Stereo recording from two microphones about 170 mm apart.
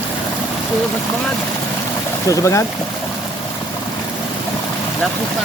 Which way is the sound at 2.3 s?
15° left (ahead or behind).